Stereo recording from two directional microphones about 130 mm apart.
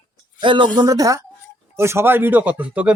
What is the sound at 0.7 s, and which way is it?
A man's voice, 30° right (ahead or behind).